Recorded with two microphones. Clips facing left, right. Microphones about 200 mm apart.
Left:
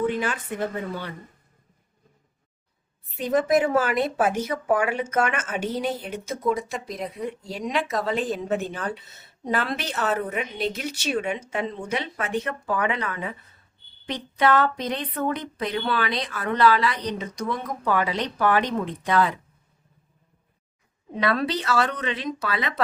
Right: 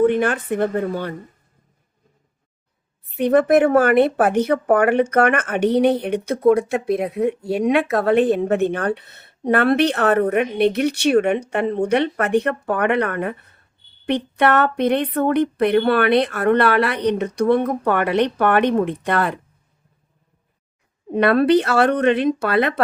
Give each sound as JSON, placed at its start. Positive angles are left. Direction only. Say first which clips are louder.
{"t": 0.0, "sound": "speech", "louder": "right 9 dB", "side_deg": -55}
{"t": 3.2, "sound": "speech", "louder": "right 7 dB", "side_deg": -65}
{"t": 21.2, "sound": "speech", "louder": "right 10 dB", "side_deg": -60}